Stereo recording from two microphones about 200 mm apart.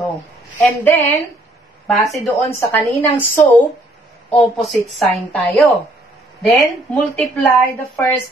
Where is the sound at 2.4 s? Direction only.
10° left (ahead or behind).